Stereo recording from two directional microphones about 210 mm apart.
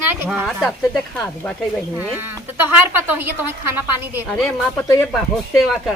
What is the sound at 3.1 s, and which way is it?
A woman's voice, 10° right (ahead or behind).